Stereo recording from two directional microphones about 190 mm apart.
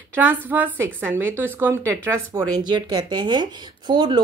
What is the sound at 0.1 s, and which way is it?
Speech, 10° right (ahead or behind).